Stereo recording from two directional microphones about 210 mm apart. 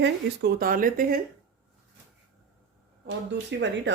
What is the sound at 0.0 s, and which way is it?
Speech, 45° right (ahead or behind).